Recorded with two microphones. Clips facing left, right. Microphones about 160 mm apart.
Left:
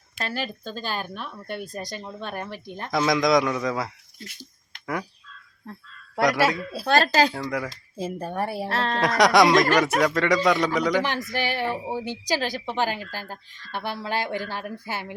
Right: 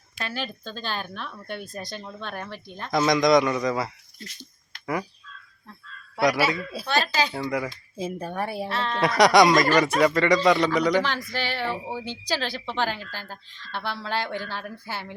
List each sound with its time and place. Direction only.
0.2 s a woman's voice: 5° left (ahead or behind)
2.9 s a man's voice: centre (ahead or behind)
6.5 s a man's voice: centre (ahead or behind)
6.8 s speech: 45° left (ahead or behind)
7.3 s a man's voice: centre (ahead or behind)
8.7 s speech: 40° left (ahead or behind)
9.0 s a man's voice: centre (ahead or behind)
11.0 s a woman's voice: 20° left (ahead or behind)